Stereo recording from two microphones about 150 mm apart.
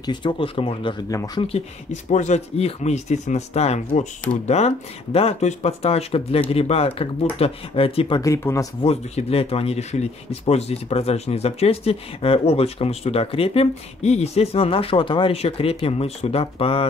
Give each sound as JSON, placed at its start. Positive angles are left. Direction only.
{"t": 0.0, "sound": "speech", "side_deg": 30}
{"t": 1.1, "sound": "speech", "side_deg": 25}
{"t": 1.4, "sound": "speech", "side_deg": 45}
{"t": 8.2, "sound": "speech", "side_deg": 20}
{"t": 8.8, "sound": "speech", "side_deg": 45}